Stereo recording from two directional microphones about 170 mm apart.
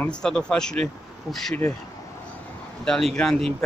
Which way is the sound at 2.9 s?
5° left (ahead or behind).